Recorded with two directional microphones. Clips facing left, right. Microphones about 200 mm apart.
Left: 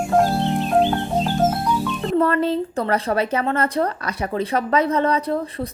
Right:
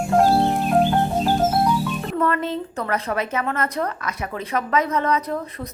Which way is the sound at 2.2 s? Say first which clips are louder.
Left 4 dB; 30° left (ahead or behind).